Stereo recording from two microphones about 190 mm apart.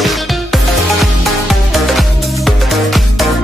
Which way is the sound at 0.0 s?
Centre (ahead or behind).